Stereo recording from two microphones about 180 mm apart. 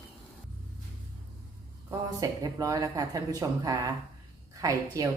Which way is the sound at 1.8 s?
20° right (ahead or behind).